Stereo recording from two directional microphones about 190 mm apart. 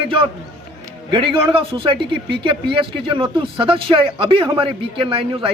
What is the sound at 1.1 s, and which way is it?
Speech, 25° right (ahead or behind).